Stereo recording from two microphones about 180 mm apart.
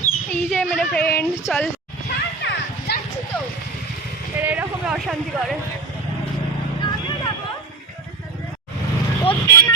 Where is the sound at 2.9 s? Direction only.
65° left (ahead or behind).